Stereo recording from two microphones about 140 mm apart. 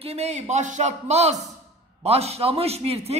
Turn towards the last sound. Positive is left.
turn(degrees=-45)  # may be behind; listen again after turning